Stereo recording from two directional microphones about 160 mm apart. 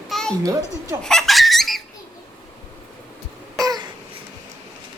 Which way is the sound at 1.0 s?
Centre (ahead or behind).